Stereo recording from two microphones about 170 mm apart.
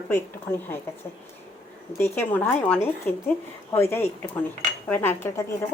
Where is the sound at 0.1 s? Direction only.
10° left (ahead or behind).